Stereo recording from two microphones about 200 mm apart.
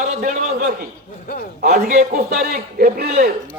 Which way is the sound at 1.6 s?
50° right (ahead or behind).